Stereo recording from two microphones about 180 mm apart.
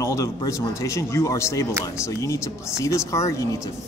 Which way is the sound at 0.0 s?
20° left (ahead or behind).